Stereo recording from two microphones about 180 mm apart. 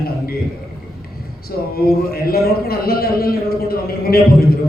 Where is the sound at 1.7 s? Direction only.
60° left (ahead or behind).